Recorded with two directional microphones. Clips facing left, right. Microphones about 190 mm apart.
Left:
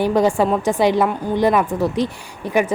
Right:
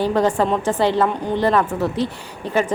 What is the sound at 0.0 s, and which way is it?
Speech, 10° left (ahead or behind).